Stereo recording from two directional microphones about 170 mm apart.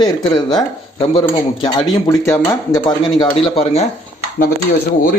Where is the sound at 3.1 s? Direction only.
30° left (ahead or behind).